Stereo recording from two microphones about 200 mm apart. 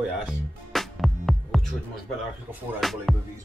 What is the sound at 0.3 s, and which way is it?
Music, centre (ahead or behind).